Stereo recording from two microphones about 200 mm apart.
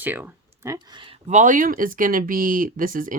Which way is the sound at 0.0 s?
10° right (ahead or behind).